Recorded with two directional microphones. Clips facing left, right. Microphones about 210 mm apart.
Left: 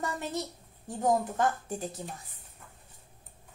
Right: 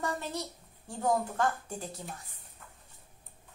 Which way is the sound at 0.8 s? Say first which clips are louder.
Left 2 dB; 20° left (ahead or behind).